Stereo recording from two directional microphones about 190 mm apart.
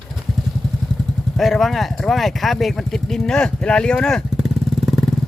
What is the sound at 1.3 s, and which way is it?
Speech, centre (ahead or behind).